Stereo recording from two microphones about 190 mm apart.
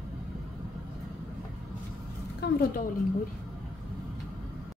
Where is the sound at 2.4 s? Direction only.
60° left (ahead or behind).